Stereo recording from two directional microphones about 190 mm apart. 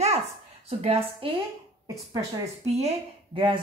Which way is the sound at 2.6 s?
35° right (ahead or behind).